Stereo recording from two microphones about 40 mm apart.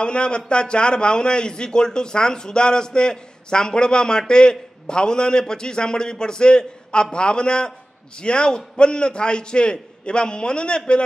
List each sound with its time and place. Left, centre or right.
0.0 s speech: left